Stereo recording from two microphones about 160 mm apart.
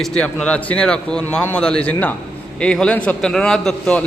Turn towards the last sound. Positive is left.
turn(degrees=5)  # may be behind; listen again after turning